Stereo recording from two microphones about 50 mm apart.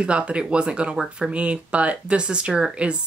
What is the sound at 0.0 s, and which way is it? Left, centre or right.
Speech, right.